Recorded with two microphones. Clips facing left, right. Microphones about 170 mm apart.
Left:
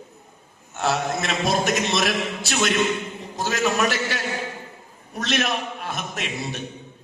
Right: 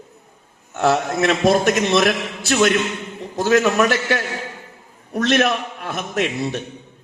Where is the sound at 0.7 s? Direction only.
55° right (ahead or behind).